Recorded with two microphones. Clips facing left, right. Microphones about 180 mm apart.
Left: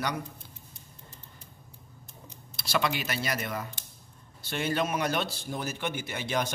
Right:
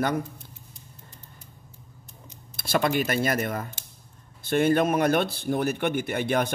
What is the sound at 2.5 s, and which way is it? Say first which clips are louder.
A man's voice: right 6 dB; 50° right (ahead or behind).